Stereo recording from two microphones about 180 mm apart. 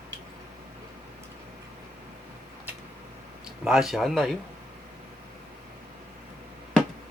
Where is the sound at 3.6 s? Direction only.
Centre (ahead or behind).